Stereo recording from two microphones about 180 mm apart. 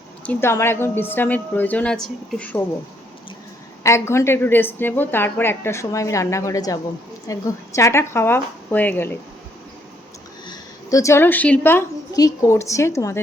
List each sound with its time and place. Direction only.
0.3 s a woman's voice: 15° left (ahead or behind)
3.8 s a woman's voice: 15° left (ahead or behind)
10.4 s a woman's voice: 20° left (ahead or behind)